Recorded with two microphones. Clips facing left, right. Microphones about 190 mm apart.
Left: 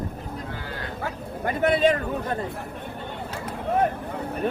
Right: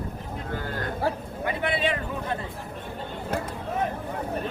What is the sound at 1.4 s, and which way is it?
Vehicle, 45° left (ahead or behind).